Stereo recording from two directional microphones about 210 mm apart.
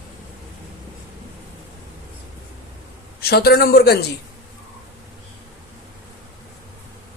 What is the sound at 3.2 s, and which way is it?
Speech, 50° left (ahead or behind).